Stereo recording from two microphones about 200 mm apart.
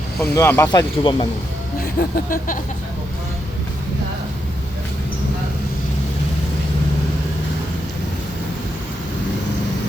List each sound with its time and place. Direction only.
0.2 s speech: 10° left (ahead or behind)
2.0 s speech: 45° left (ahead or behind)